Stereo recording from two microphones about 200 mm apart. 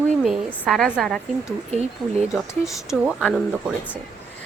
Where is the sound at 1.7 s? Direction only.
35° right (ahead or behind).